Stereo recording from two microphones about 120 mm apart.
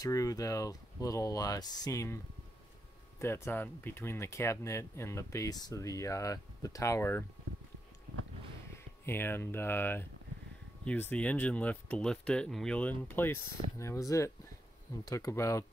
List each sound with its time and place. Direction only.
0.0 s speech: 30° left (ahead or behind)
3.2 s speech: 20° left (ahead or behind)
8.7 s speech: 20° left (ahead or behind)